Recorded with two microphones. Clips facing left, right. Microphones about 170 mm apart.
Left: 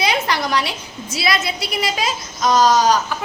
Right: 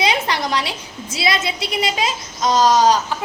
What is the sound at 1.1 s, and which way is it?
A woman's voice, 25° right (ahead or behind).